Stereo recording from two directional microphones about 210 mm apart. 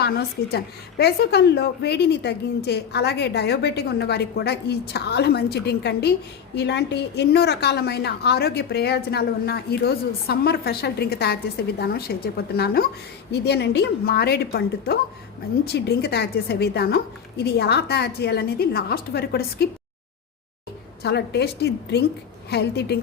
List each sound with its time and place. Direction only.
0.0 s a woman's voice: 50° left (ahead or behind)
21.0 s a woman's voice: 55° left (ahead or behind)